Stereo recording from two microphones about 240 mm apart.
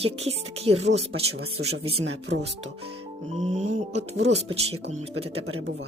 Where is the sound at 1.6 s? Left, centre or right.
Right.